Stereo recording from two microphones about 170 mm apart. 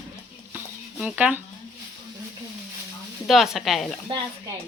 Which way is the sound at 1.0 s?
5° right (ahead or behind).